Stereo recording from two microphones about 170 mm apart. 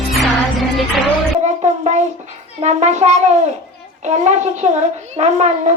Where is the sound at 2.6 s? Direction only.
45° right (ahead or behind).